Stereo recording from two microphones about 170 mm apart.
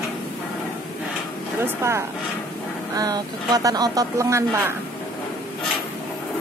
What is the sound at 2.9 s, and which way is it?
Speech, 25° right (ahead or behind).